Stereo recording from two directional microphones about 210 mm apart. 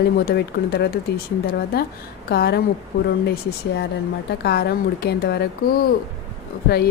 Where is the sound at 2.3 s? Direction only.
50° left (ahead or behind).